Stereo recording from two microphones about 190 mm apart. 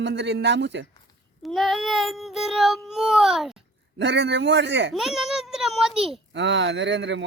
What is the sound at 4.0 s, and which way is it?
Speech, 70° right (ahead or behind).